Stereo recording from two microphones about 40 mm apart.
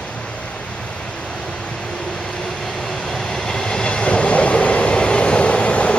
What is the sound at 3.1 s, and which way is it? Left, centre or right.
Train, centre.